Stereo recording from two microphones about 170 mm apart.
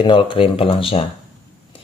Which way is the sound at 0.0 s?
30° left (ahead or behind).